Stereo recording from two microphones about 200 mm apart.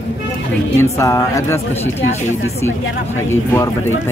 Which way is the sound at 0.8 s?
15° left (ahead or behind).